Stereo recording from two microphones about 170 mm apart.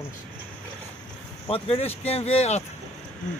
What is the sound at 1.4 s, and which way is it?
Speech, 35° left (ahead or behind).